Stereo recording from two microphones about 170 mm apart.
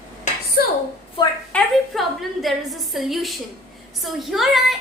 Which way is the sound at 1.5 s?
Centre (ahead or behind).